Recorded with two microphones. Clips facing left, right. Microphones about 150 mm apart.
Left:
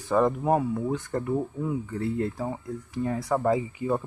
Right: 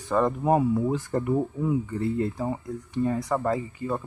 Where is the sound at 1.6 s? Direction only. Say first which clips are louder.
Right 3 dB; centre (ahead or behind).